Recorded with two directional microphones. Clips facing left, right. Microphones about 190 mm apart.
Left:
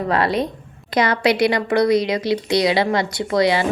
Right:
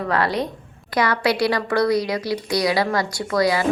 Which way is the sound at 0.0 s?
25° left (ahead or behind).